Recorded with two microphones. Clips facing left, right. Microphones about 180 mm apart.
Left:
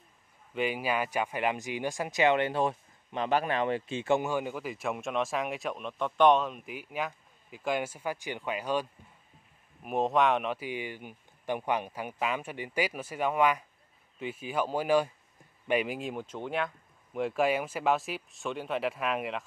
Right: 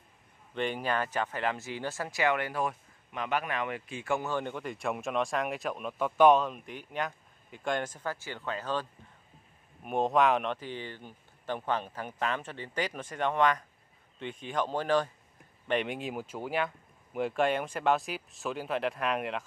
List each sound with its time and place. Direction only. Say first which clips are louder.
0.6 s speech: left 1 dB; 5° left (ahead or behind); by 4.3 s 25° left (ahead or behind)
4.3 s speech: left 1 dB; 5° left (ahead or behind)
9.8 s speech: even; centre (ahead or behind)